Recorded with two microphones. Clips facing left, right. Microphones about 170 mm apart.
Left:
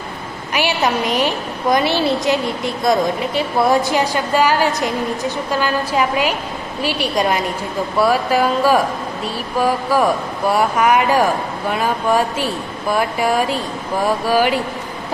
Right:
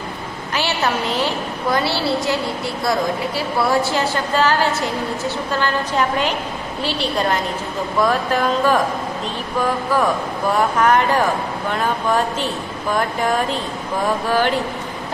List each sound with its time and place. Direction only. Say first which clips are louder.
0.6 s a woman's voice: left 3 dB; 15° left (ahead or behind)